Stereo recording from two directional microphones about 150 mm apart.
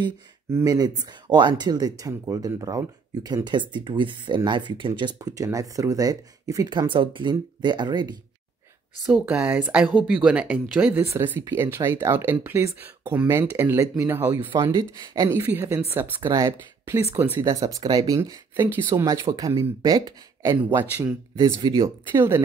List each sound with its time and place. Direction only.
0.5 s speech: 20° right (ahead or behind)
9.0 s speech: 5° right (ahead or behind)
14.8 s speech: 25° right (ahead or behind)
21.8 s speech: 20° right (ahead or behind)